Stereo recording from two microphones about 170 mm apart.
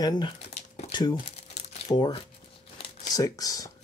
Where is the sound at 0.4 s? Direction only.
40° left (ahead or behind).